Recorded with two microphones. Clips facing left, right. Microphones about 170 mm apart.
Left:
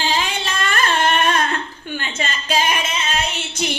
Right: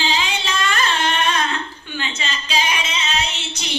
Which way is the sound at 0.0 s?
50° left (ahead or behind).